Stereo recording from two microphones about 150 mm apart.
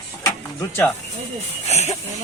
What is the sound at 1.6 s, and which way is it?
Speech, 45° left (ahead or behind).